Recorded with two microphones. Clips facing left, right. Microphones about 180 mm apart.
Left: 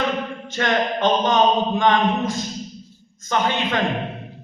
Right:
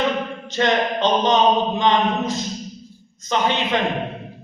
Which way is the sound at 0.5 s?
20° right (ahead or behind).